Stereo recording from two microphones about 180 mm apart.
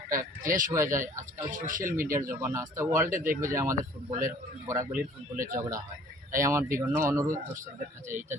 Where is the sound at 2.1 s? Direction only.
15° right (ahead or behind).